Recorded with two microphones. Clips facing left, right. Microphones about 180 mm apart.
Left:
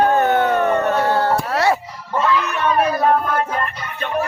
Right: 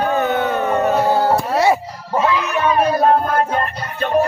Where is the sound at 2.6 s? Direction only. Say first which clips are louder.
Right 2 dB; 5° right (ahead or behind).